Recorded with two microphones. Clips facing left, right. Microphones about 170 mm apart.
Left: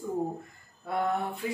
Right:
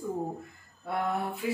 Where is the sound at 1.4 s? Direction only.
5° right (ahead or behind).